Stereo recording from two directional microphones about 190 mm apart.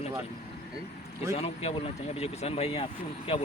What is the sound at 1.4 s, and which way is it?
Speech, 30° left (ahead or behind).